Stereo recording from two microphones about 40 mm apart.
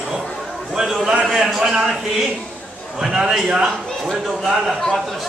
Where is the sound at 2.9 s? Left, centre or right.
Centre.